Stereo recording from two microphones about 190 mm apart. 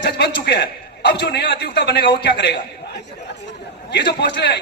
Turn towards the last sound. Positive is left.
turn(degrees=60)  # may be behind; listen again after turning